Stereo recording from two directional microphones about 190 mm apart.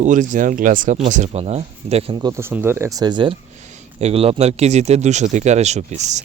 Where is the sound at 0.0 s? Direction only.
40° right (ahead or behind).